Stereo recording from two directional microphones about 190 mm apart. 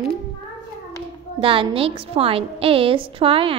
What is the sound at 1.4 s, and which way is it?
A woman's voice, 30° right (ahead or behind).